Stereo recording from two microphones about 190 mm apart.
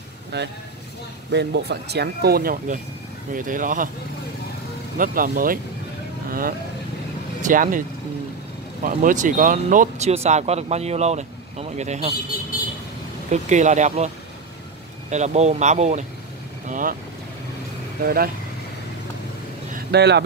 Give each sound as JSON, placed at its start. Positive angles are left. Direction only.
{"t": 0.3, "sound": "speech", "side_deg": -60}
{"t": 4.9, "sound": "speech", "side_deg": -45}
{"t": 7.4, "sound": "speech", "side_deg": -45}
{"t": 8.8, "sound": "speech", "side_deg": -45}
{"t": 13.3, "sound": "speech", "side_deg": -40}
{"t": 18.0, "sound": "speech", "side_deg": -50}
{"t": 19.7, "sound": "vehicle", "side_deg": -60}